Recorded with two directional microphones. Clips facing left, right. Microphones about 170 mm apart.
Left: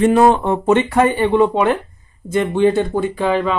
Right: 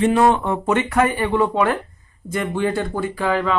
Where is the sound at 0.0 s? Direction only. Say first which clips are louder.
Left 4 dB; 40° left (ahead or behind).